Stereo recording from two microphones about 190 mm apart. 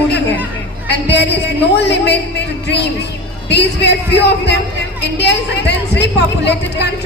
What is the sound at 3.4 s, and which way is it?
Speech, 60° left (ahead or behind).